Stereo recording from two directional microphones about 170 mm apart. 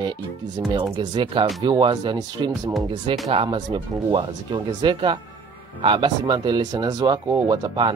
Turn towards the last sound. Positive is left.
turn(degrees=-25)  # may be behind; listen again after turning